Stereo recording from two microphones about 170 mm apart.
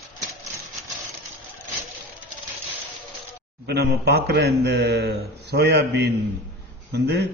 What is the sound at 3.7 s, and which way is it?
A man's voice, 70° right (ahead or behind).